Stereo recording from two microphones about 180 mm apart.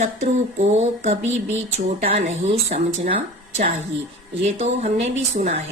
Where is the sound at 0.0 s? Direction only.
40° right (ahead or behind).